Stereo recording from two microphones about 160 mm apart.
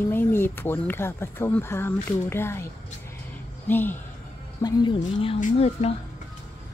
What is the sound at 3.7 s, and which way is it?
Speech, 10° left (ahead or behind).